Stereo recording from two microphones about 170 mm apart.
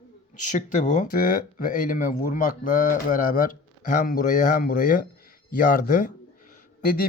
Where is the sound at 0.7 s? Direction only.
45° left (ahead or behind).